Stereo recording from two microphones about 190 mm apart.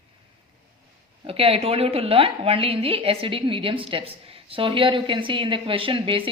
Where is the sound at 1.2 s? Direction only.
30° right (ahead or behind).